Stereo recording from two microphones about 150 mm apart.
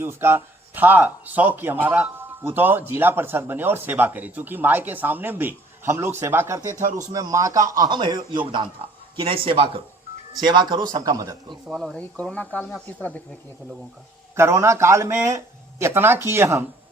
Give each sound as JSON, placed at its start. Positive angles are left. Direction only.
{"t": 0.0, "sound": "a man's voice", "side_deg": -15}
{"t": 11.7, "sound": "speech", "side_deg": 0}
{"t": 14.3, "sound": "speech", "side_deg": -15}